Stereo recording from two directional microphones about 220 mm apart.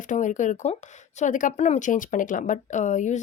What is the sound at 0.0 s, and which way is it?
Speech, 35° left (ahead or behind).